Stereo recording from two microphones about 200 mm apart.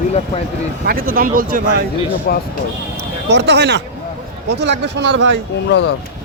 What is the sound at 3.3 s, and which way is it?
Speech, 55° right (ahead or behind).